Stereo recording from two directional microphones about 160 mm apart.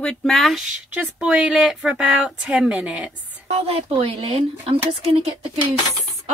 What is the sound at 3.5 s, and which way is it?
Speech, 40° right (ahead or behind).